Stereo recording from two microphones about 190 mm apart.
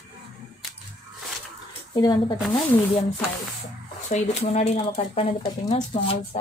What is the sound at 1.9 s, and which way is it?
Speech, 20° left (ahead or behind).